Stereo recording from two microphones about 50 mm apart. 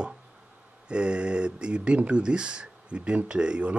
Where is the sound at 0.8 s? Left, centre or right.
Right.